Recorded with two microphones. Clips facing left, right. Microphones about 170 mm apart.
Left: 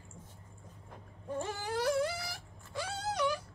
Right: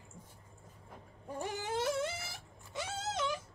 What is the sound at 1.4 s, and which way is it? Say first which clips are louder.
Dog: left 1 dB; 20° right (ahead or behind).